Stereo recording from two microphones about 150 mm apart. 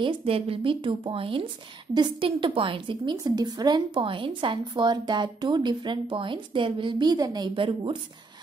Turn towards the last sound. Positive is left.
turn(degrees=-35)  # may be behind; listen again after turning